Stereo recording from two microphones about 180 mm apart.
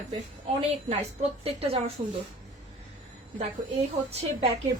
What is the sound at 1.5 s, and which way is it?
Speech, 35° right (ahead or behind).